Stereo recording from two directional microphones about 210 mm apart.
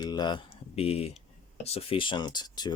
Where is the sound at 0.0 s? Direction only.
20° left (ahead or behind).